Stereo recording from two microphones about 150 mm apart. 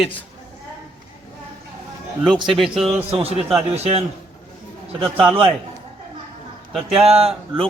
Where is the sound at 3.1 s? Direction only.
40° right (ahead or behind).